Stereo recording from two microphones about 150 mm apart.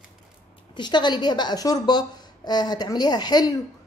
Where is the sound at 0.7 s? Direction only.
30° left (ahead or behind).